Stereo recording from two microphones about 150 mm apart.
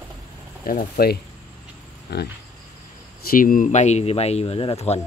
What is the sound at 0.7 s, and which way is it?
Speech, 80° left.